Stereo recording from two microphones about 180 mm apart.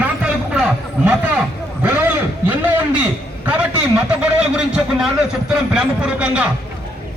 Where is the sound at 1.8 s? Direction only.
10° right (ahead or behind).